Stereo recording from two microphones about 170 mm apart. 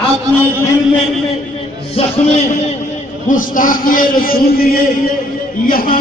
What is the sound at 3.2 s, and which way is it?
A man's voice, 50° left (ahead or behind).